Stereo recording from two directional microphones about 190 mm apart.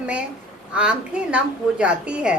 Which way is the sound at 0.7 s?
5° right (ahead or behind).